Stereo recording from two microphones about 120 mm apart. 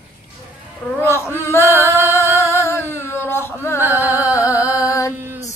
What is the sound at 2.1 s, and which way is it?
Music, 20° left (ahead or behind).